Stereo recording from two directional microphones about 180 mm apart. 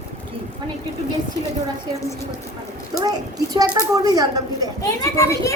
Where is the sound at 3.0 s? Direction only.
20° right (ahead or behind).